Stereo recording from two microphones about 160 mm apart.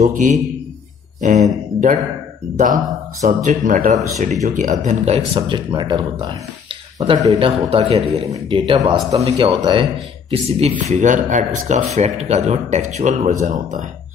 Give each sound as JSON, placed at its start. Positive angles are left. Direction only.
{"t": 0.0, "sound": "speech", "side_deg": -50}
{"t": 10.3, "sound": "speech", "side_deg": -40}